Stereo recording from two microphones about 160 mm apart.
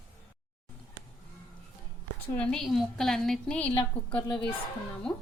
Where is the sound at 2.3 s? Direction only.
5° left (ahead or behind).